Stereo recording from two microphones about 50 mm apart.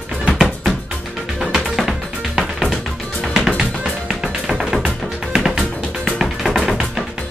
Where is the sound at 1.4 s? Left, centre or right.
Centre.